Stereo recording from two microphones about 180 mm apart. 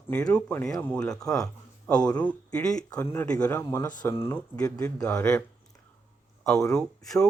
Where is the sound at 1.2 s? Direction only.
20° left (ahead or behind).